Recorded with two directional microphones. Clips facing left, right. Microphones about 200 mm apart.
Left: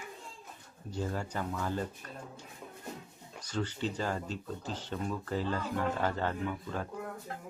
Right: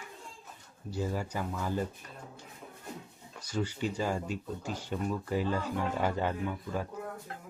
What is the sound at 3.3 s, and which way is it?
Speech, 10° right (ahead or behind).